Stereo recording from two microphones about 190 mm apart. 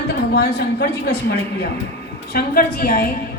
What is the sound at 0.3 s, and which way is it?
Speech, 55° left (ahead or behind).